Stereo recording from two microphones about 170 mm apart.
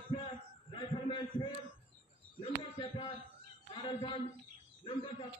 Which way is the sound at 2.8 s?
30° left (ahead or behind).